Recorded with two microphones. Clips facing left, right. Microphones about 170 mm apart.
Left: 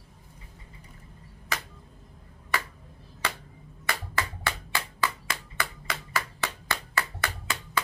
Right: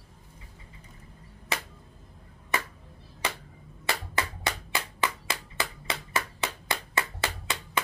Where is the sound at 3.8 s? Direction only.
20° right (ahead or behind).